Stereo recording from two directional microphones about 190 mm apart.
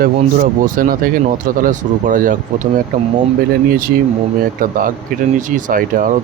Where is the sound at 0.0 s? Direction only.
45° right (ahead or behind).